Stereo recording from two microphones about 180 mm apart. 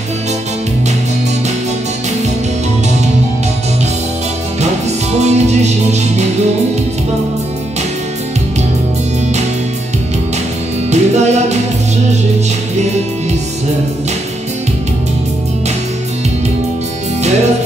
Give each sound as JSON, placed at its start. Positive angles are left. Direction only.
{"t": 5.2, "sound": "music", "side_deg": -40}
{"t": 10.9, "sound": "music", "side_deg": -40}